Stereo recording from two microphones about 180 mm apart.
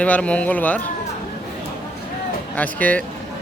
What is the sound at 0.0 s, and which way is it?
Speech, 5° left (ahead or behind).